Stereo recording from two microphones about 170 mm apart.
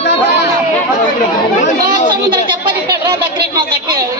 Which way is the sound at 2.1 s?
25° right (ahead or behind).